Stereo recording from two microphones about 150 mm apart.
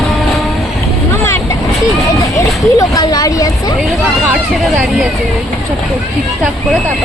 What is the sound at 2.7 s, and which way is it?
Speech, 25° left (ahead or behind).